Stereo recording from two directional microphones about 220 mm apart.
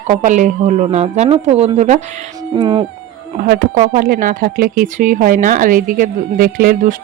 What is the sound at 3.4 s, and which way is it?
Speech, 45° right (ahead or behind).